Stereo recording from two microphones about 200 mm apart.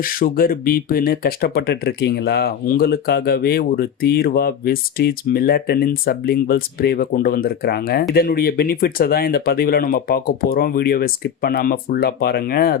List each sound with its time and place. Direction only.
0.0 s speech: 45° left (ahead or behind)